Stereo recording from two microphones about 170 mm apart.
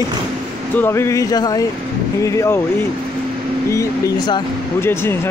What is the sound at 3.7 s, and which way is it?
Speech, 20° left (ahead or behind).